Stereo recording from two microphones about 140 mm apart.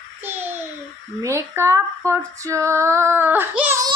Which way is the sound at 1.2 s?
20° right (ahead or behind).